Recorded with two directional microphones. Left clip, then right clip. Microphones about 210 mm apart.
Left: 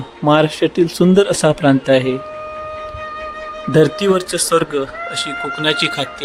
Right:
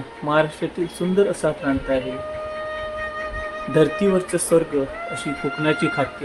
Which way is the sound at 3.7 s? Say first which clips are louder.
Left 5 dB; 35° left (ahead or behind).